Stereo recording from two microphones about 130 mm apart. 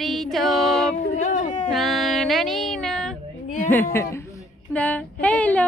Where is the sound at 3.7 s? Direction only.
15° left (ahead or behind).